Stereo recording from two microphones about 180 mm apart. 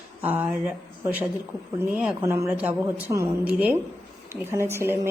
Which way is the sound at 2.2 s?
15° right (ahead or behind).